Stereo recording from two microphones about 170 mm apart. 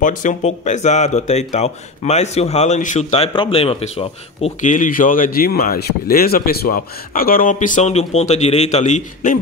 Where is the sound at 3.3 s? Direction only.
30° left (ahead or behind).